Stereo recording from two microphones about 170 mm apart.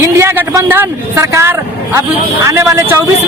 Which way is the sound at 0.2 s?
15° right (ahead or behind).